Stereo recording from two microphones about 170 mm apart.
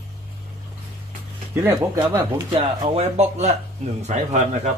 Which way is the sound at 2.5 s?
35° right (ahead or behind).